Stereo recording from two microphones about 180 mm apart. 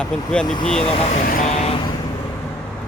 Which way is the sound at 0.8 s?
35° left (ahead or behind).